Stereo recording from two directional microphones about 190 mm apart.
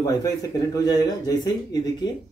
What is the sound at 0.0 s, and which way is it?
A man's voice, 20° left (ahead or behind).